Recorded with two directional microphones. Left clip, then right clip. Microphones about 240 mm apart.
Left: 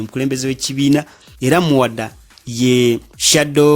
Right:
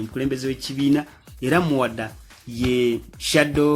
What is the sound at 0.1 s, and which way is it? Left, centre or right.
Speech, left.